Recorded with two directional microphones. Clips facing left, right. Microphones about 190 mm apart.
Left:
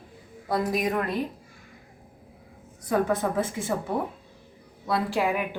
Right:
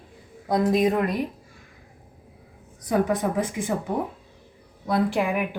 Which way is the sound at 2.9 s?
15° right (ahead or behind).